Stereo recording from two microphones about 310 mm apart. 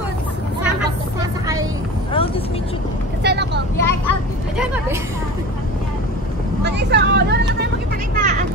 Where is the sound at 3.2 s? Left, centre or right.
Right.